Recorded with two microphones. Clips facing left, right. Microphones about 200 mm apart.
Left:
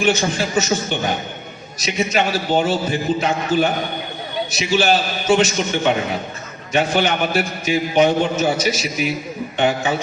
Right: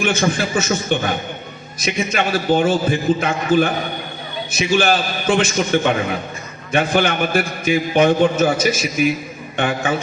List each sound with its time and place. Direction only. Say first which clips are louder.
0.2 s a man's voice: right 1 dB; 55° right (ahead or behind)